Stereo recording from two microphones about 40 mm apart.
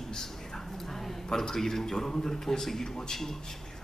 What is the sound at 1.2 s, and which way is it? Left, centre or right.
A man's voice, centre.